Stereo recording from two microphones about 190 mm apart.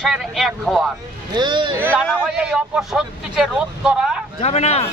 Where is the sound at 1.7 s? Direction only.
10° right (ahead or behind).